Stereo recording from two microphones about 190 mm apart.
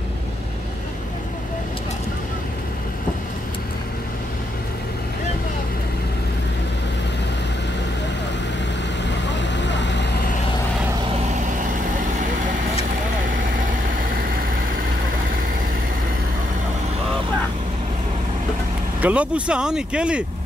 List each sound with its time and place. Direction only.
9.4 s vehicle: 70° left (ahead or behind)
18.9 s speech: 5° right (ahead or behind)